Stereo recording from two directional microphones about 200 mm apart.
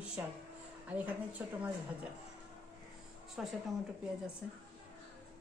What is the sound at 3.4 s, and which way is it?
Speech, 5° right (ahead or behind).